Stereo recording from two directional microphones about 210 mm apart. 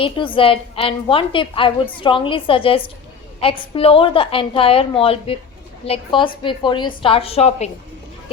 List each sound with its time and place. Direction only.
0.0 s a woman's voice: 25° left (ahead or behind)